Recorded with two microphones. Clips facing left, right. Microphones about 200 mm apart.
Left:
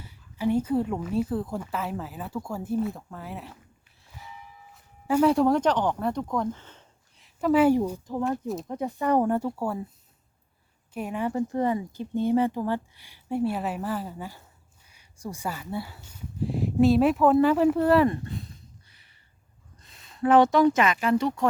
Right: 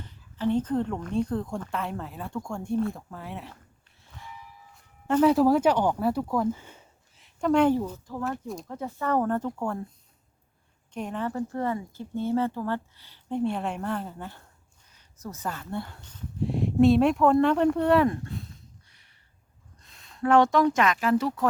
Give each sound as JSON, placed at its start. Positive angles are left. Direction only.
{"t": 0.0, "sound": "a woman's voice", "side_deg": 10}
{"t": 4.0, "sound": "a sound", "side_deg": 5}
{"t": 4.7, "sound": "speech", "side_deg": 5}
{"t": 7.4, "sound": "a woman's voice", "side_deg": 5}
{"t": 7.8, "sound": "speech", "side_deg": 15}
{"t": 10.9, "sound": "speech", "side_deg": 10}